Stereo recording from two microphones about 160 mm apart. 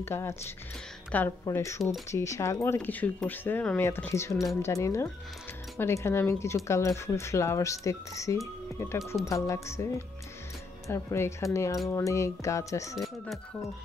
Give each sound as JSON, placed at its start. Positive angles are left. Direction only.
{"t": 0.0, "sound": "speech", "side_deg": 15}
{"t": 1.4, "sound": "speech", "side_deg": 20}
{"t": 12.9, "sound": "speech", "side_deg": 0}